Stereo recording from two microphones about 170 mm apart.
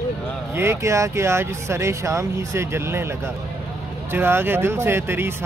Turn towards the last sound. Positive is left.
turn(degrees=-15)  # may be behind; listen again after turning